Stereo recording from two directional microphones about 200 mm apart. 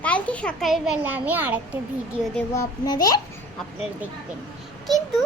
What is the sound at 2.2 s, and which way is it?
Speech, 5° left (ahead or behind).